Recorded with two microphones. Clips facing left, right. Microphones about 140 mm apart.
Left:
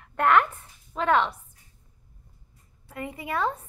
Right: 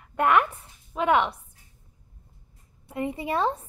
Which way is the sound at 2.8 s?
20° right (ahead or behind).